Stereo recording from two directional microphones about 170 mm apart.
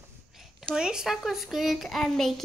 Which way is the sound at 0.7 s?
5° right (ahead or behind).